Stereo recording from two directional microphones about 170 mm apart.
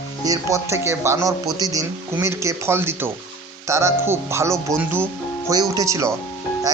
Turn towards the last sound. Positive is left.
turn(degrees=-20)  # may be behind; listen again after turning